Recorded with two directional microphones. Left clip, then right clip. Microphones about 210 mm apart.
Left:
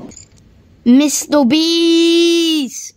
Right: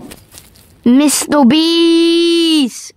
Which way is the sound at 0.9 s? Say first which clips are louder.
Right 1 dB; 20° right (ahead or behind).